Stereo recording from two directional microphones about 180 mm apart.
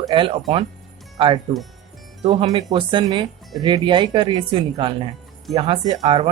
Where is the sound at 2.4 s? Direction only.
25° right (ahead or behind).